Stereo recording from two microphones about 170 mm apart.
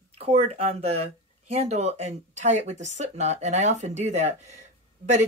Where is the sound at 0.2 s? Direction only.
35° right (ahead or behind).